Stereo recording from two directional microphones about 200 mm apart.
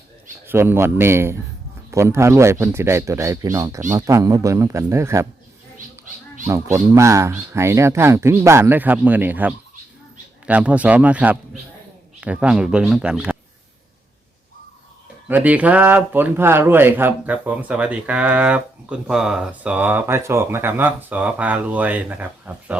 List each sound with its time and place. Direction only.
0.4 s speech: 10° right (ahead or behind)
6.5 s speech: 15° right (ahead or behind)
15.3 s speech: 10° right (ahead or behind)